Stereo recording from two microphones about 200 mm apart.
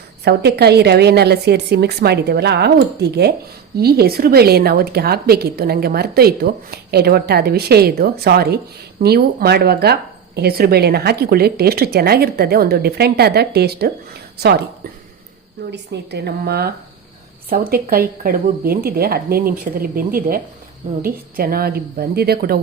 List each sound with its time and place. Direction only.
0.3 s a woman's voice: 55° right (ahead or behind)
15.7 s speech: 55° right (ahead or behind)